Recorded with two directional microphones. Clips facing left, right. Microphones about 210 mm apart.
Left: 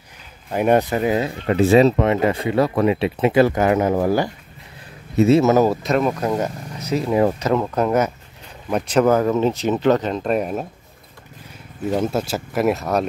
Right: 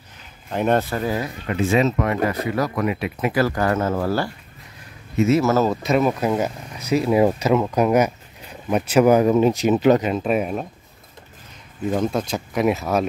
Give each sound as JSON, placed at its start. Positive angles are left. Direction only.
{"t": 0.5, "sound": "speech", "side_deg": 10}
{"t": 5.1, "sound": "speech", "side_deg": 35}
{"t": 5.4, "sound": "speech", "side_deg": 15}
{"t": 5.8, "sound": "speech", "side_deg": -5}
{"t": 11.9, "sound": "speech", "side_deg": 5}